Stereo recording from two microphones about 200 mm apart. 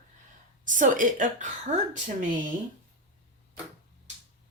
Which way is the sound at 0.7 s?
40° right (ahead or behind).